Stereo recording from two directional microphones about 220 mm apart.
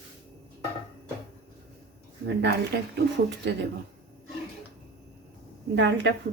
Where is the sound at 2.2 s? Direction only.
50° right (ahead or behind).